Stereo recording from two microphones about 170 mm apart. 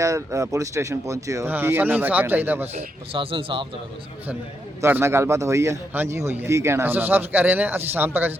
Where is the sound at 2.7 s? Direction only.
30° right (ahead or behind).